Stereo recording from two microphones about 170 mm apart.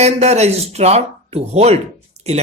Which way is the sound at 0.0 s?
40° right (ahead or behind).